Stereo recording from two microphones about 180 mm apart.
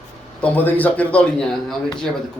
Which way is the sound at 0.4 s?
10° left (ahead or behind).